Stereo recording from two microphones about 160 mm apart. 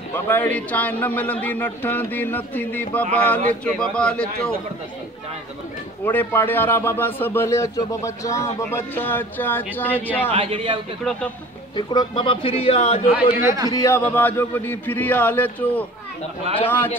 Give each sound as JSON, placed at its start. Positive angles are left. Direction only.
{"t": 0.1, "sound": "a man's voice", "side_deg": 10}
{"t": 6.0, "sound": "speech", "side_deg": 10}
{"t": 10.3, "sound": "a man's voice", "side_deg": -35}
{"t": 11.1, "sound": "speech", "side_deg": 5}
{"t": 11.7, "sound": "a man's voice", "side_deg": 30}
{"t": 13.1, "sound": "a man's voice", "side_deg": -15}
{"t": 13.7, "sound": "a man's voice", "side_deg": 20}